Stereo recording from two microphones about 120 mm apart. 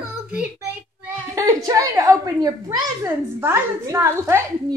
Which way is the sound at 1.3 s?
30° right (ahead or behind).